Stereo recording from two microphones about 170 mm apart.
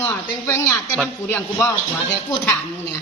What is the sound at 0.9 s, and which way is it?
Speech, 10° left (ahead or behind).